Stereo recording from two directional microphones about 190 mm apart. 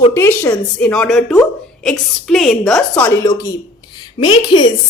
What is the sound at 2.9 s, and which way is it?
A woman's voice, 15° left (ahead or behind).